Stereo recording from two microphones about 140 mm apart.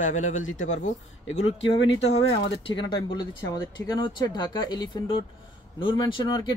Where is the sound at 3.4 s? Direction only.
20° left (ahead or behind).